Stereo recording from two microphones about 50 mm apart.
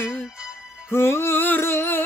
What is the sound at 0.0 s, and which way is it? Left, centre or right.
Music, left.